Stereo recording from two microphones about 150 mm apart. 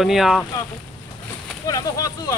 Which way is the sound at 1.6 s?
25° left (ahead or behind).